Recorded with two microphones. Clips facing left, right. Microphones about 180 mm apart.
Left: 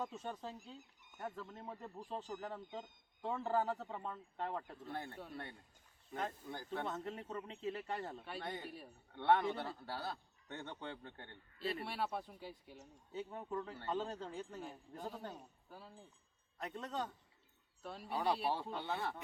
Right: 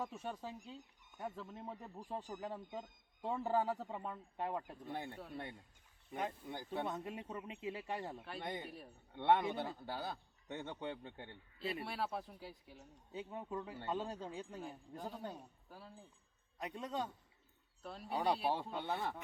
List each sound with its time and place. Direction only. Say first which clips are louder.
0.0 s speech: even; 10° right (ahead or behind)
6.1 s speech: right 1 dB; 15° right (ahead or behind)
8.6 s speech: left 1 dB; centre (ahead or behind)
9.1 s speech: even; 15° right (ahead or behind)
11.9 s speech: even; centre (ahead or behind)
13.1 s speech: left 1 dB; 10° right (ahead or behind)
14.6 s speech: even; centre (ahead or behind)
16.6 s speech: right 1 dB; 10° right (ahead or behind)
17.8 s speech: right 1 dB; centre (ahead or behind)
18.5 s speech: right 1 dB; 15° right (ahead or behind)